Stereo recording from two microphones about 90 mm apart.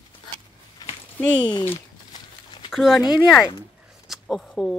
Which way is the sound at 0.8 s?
45° left (ahead or behind).